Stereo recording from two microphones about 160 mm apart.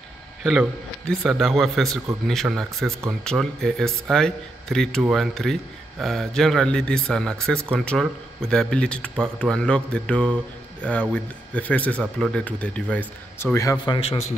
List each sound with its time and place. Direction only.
0.4 s a man's voice: centre (ahead or behind); by 13.9 s 20° left (ahead or behind)